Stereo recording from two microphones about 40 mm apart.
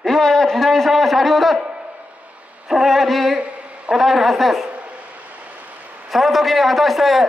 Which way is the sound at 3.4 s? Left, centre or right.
Right.